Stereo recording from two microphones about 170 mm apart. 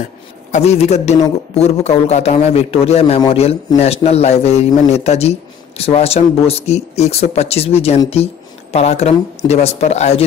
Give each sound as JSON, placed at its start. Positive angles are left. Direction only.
{"t": 0.5, "sound": "a man's voice", "side_deg": 40}